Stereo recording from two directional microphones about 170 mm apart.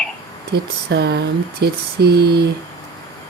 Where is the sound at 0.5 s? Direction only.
75° right (ahead or behind).